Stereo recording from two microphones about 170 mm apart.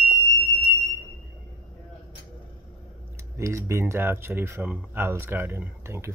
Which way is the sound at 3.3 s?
15° right (ahead or behind).